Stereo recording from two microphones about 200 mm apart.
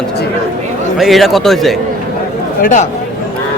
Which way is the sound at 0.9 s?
Centre (ahead or behind).